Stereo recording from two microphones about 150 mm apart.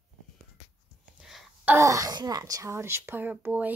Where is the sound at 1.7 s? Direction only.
20° right (ahead or behind).